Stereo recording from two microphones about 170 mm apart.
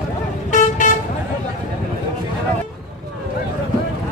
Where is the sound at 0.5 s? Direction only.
45° left (ahead or behind).